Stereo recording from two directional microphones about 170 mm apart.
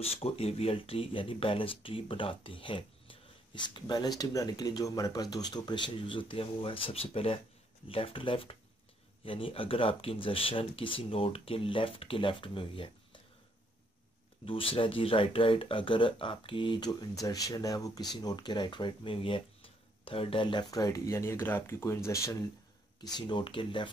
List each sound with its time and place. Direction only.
0.0 s speech: 35° left (ahead or behind)
14.4 s speech: 30° left (ahead or behind); by 22.4 s 15° left (ahead or behind)
23.1 s speech: 30° left (ahead or behind)